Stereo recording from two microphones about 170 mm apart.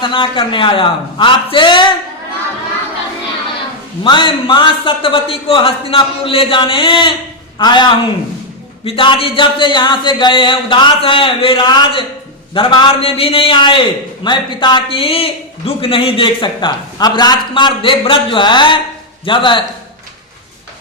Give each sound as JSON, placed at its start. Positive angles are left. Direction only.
{"t": 0.0, "sound": "a man's voice", "side_deg": 30}
{"t": 4.0, "sound": "a man's voice", "side_deg": 25}